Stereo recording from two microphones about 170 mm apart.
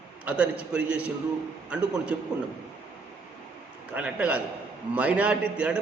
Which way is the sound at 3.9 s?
5° right (ahead or behind).